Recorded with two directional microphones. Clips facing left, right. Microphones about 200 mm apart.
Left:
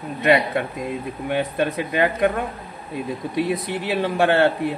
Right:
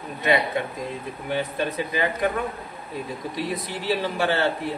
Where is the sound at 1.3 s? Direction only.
60° left (ahead or behind).